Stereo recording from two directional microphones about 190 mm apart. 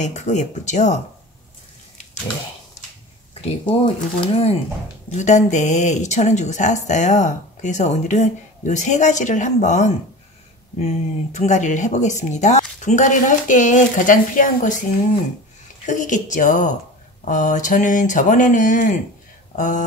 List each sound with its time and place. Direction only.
0.0 s speech: 40° left (ahead or behind)
3.3 s speech: 30° left (ahead or behind); by 14.8 s 45° left (ahead or behind)
15.8 s speech: 40° left (ahead or behind)